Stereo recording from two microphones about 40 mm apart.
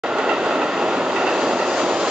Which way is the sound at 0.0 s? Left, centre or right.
Centre.